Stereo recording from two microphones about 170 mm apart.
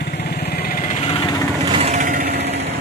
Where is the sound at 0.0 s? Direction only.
65° left (ahead or behind).